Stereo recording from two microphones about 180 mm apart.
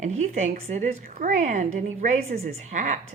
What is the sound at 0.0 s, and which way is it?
A woman's voice, 40° right (ahead or behind).